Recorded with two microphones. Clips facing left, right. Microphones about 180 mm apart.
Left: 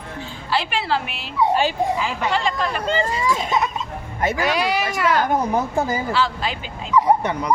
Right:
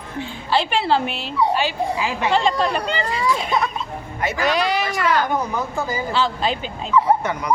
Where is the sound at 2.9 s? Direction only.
45° left (ahead or behind).